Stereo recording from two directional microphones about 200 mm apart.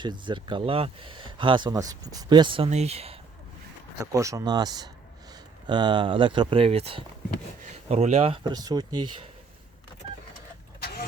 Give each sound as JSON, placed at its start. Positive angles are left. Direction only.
{"t": 0.0, "sound": "speech", "side_deg": -25}
{"t": 4.0, "sound": "speech", "side_deg": -15}
{"t": 10.8, "sound": "a sound", "side_deg": 50}